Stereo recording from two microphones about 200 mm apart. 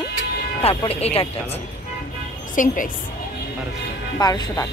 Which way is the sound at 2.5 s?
40° left (ahead or behind).